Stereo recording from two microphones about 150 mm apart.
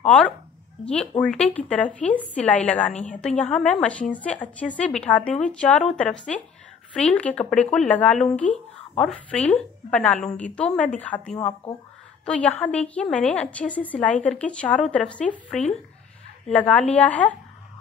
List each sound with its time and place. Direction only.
0.0 s a woman's voice: 5° left (ahead or behind)
2.9 s a woman's voice: 50° left (ahead or behind)
3.2 s a woman's voice: 5° left (ahead or behind)